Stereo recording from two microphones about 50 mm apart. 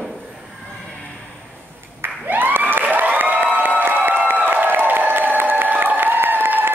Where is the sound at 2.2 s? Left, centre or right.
Right.